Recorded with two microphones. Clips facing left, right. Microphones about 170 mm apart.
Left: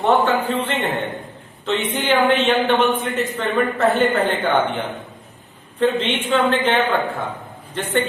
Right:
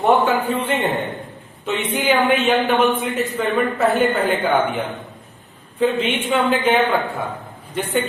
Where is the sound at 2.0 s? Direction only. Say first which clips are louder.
Even; 5° right (ahead or behind).